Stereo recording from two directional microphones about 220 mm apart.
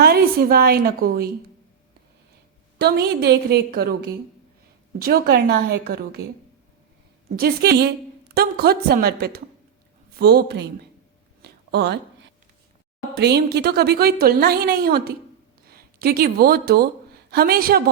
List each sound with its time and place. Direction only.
0.0 s a woman's voice: 45° right (ahead or behind)
2.7 s a woman's voice: 45° right (ahead or behind)
7.3 s a woman's voice: 45° right (ahead or behind)
11.4 s a sound: 50° right (ahead or behind)
13.1 s a woman's voice: 45° right (ahead or behind)